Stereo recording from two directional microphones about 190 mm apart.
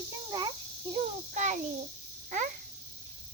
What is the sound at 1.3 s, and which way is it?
Speech, 40° right (ahead or behind).